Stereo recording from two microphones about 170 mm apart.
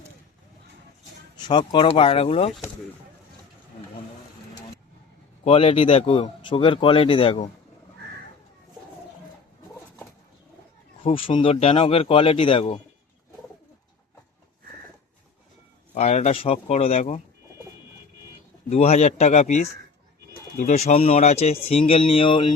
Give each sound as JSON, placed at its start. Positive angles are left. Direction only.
{"t": 1.4, "sound": "speech", "side_deg": 25}
{"t": 5.5, "sound": "speech", "side_deg": 35}
{"t": 11.0, "sound": "speech", "side_deg": 30}
{"t": 16.0, "sound": "speech", "side_deg": 40}
{"t": 18.7, "sound": "speech", "side_deg": 40}